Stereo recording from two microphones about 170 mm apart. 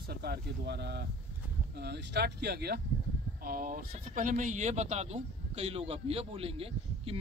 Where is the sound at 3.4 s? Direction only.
55° right (ahead or behind); by 7.1 s 35° right (ahead or behind).